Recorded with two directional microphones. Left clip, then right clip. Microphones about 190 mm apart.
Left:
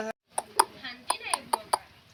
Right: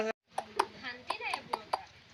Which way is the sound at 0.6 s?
25° left (ahead or behind).